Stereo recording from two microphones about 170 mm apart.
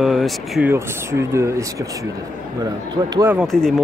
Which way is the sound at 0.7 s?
15° right (ahead or behind).